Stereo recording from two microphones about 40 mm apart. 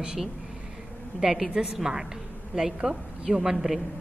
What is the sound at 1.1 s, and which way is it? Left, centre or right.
A woman's voice, centre.